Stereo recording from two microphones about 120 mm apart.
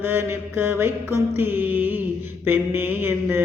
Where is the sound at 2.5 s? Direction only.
15° right (ahead or behind).